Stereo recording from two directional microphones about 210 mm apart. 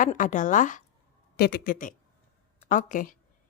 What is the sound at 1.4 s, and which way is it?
A woman's voice, 50° left (ahead or behind).